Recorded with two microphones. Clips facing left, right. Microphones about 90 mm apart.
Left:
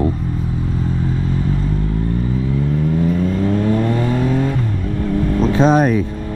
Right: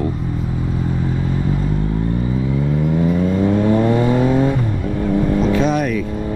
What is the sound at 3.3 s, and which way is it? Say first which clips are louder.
Vehicle: right 2 dB; 20° right (ahead or behind).